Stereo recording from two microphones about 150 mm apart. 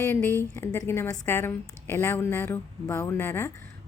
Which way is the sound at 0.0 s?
15° left (ahead or behind).